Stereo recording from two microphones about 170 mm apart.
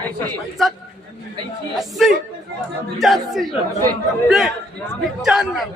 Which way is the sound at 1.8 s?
Centre (ahead or behind).